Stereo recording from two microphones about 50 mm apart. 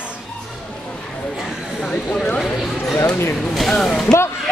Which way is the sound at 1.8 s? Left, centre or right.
Centre.